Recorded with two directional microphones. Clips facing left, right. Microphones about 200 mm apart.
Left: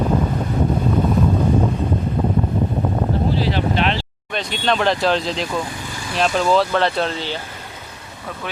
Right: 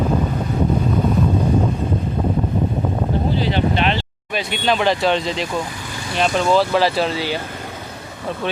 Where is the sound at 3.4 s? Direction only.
Centre (ahead or behind).